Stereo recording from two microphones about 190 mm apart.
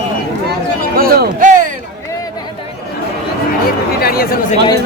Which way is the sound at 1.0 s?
45° right (ahead or behind).